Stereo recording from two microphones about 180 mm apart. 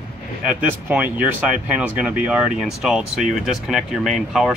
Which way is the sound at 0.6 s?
10° right (ahead or behind).